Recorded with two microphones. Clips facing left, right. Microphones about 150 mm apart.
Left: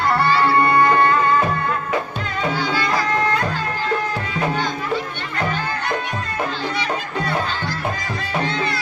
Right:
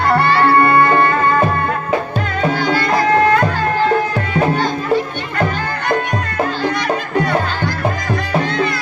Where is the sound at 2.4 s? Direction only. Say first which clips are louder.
Right 5 dB; 55° right (ahead or behind).